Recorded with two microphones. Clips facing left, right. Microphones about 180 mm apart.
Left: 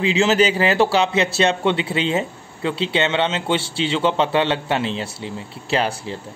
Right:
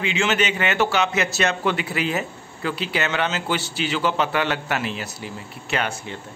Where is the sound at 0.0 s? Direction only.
35° left (ahead or behind).